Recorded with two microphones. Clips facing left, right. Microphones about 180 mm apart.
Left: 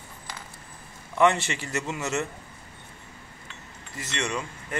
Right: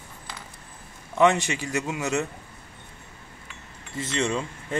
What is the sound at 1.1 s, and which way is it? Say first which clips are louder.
A man's voice: right 2 dB; 15° right (ahead or behind).